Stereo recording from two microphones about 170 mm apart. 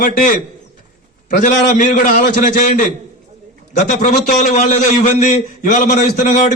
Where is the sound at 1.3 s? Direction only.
50° left (ahead or behind).